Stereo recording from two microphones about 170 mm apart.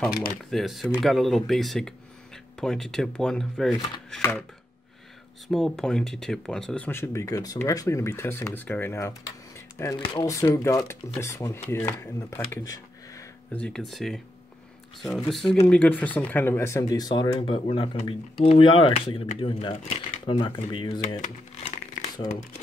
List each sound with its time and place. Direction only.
0.5 s speech: centre (ahead or behind)
4.2 s speech: 15° left (ahead or behind)
5.5 s speech: 5° left (ahead or behind); by 13.6 s 20° left (ahead or behind)
13.6 s speech: centre (ahead or behind); by 21.0 s 25° left (ahead or behind)
21.2 s speech: 40° left (ahead or behind)